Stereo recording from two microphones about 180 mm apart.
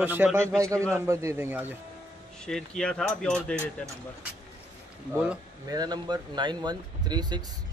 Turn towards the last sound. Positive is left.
turn(degrees=-25)  # may be behind; listen again after turning